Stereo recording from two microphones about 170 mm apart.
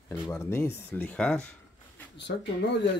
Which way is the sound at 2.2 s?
90° left.